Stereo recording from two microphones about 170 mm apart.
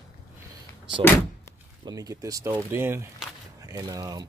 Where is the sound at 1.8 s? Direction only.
20° right (ahead or behind).